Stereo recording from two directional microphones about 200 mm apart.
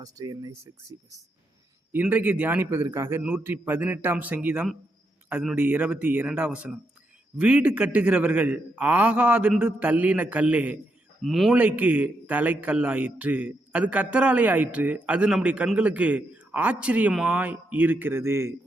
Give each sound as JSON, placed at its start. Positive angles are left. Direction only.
{"t": 0.0, "sound": "a man's voice", "side_deg": -20}